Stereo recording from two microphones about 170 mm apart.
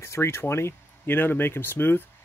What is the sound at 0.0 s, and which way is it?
Speech, 15° left (ahead or behind).